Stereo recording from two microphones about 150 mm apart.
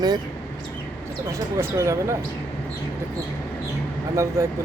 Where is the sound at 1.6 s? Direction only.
20° right (ahead or behind).